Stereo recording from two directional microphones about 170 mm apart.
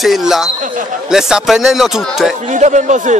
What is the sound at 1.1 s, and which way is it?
Speech, 5° right (ahead or behind).